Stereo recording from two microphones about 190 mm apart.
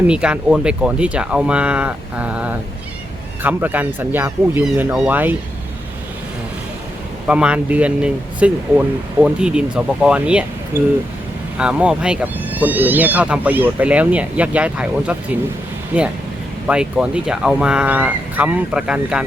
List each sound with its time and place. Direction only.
0.1 s speech: 5° right (ahead or behind)
7.3 s speech: 5° right (ahead or behind)